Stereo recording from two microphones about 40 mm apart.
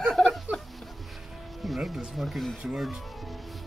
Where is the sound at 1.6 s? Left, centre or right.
Centre.